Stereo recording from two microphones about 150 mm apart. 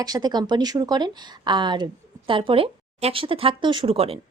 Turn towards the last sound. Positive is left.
turn(degrees=-40)  # may be behind; listen again after turning